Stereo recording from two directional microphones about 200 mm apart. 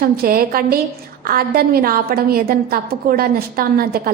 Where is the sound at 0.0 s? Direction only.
45° right (ahead or behind).